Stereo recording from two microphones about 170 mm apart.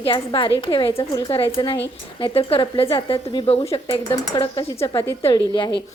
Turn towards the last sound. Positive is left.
turn(degrees=25)  # may be behind; listen again after turning